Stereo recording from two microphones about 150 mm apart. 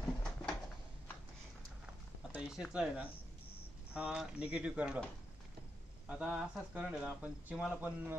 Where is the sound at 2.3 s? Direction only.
5° right (ahead or behind).